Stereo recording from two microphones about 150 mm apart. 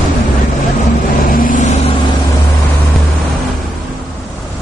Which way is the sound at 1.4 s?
60° left (ahead or behind).